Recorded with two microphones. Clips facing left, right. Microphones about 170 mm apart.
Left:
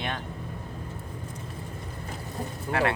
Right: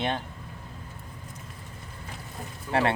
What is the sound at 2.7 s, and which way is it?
Speech, 50° left (ahead or behind).